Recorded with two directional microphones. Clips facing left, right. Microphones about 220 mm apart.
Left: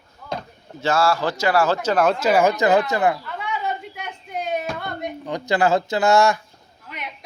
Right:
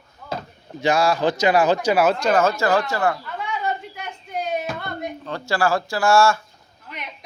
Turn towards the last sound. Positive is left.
turn(degrees=0)  # may be behind; listen again after turning